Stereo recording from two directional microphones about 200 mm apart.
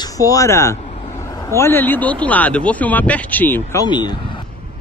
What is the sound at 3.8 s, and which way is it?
Speech, 20° left (ahead or behind).